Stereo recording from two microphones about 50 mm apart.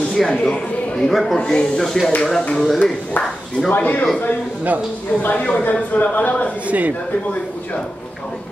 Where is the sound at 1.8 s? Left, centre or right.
Centre.